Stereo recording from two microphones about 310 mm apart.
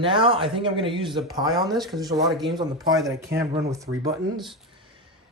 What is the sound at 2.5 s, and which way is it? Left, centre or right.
Speech, centre.